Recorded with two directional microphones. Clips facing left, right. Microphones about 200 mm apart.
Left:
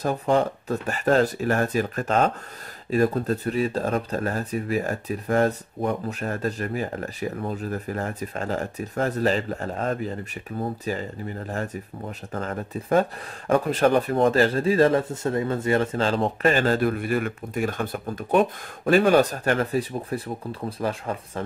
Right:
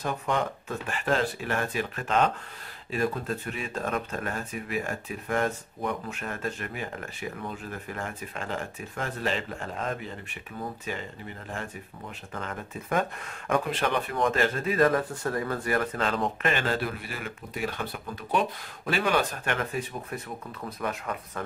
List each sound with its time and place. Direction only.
0.0 s speech: 35° left (ahead or behind)